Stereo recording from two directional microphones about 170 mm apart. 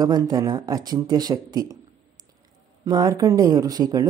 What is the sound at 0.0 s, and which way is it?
Speech, 20° right (ahead or behind).